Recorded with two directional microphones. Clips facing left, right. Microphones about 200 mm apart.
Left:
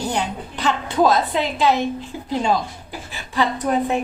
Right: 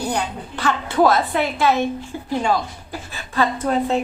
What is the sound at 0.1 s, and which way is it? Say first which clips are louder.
A woman's voice: even; 20° left (ahead or behind).